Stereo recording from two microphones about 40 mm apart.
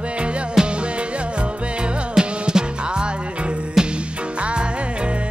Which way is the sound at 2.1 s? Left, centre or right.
Centre.